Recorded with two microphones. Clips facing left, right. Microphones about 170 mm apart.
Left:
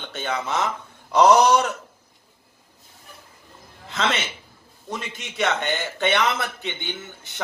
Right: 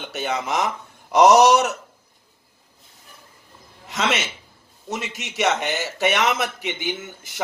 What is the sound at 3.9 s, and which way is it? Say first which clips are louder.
Speech: right 1 dB; 10° right (ahead or behind).